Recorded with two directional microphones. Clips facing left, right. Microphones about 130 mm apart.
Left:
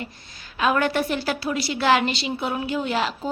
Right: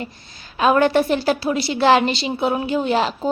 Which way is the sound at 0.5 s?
30° right (ahead or behind).